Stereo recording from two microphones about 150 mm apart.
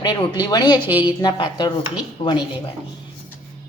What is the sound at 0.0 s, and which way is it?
A woman's voice, 30° left (ahead or behind).